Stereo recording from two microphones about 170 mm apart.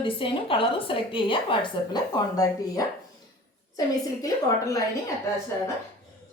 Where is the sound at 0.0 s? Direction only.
30° left (ahead or behind).